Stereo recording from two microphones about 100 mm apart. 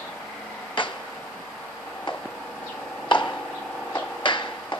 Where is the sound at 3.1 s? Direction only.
55° left (ahead or behind).